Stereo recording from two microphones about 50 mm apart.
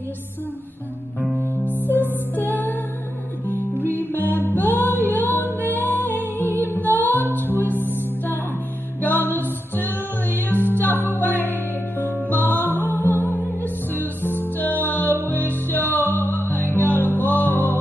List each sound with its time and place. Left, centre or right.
1.3 s music: left